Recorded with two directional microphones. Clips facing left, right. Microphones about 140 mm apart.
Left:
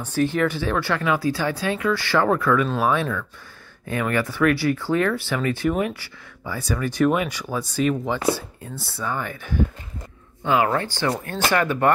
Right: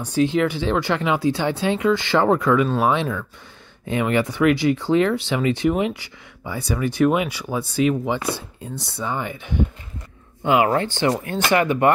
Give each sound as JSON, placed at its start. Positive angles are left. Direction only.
{"t": 0.0, "sound": "speech", "side_deg": -15}
{"t": 8.4, "sound": "speech", "side_deg": -20}